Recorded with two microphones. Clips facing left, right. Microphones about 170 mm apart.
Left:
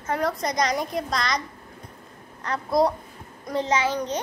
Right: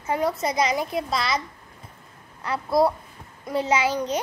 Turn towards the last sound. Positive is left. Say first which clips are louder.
# right 1 dB
turn(degrees=-10)  # may be behind; listen again after turning